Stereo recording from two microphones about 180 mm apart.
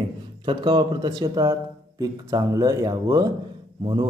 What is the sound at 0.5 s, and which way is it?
Speech, 25° right (ahead or behind).